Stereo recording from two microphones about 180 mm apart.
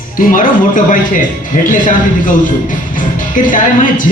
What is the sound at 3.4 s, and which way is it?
Speech, 50° left (ahead or behind).